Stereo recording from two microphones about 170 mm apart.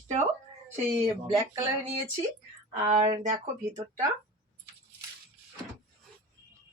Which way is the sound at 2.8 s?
35° right (ahead or behind).